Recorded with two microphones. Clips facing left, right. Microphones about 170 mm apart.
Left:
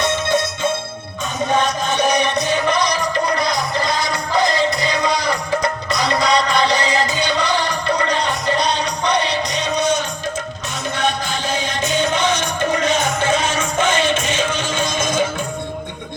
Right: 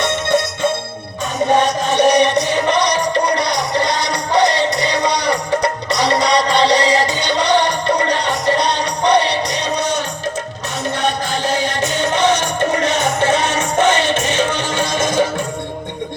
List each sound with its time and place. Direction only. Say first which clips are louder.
0.0 s music: right 2 dB; 70° right (ahead or behind)
1.9 s music: right 7 dB; 70° right (ahead or behind)
11.4 s music: right 3 dB; 70° right (ahead or behind)